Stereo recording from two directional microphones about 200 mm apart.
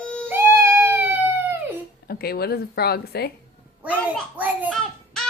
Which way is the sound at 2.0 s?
50° left (ahead or behind).